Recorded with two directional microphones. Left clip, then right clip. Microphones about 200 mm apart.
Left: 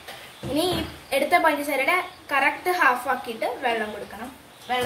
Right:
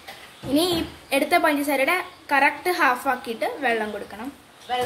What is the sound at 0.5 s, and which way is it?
A woman's voice, 50° right (ahead or behind).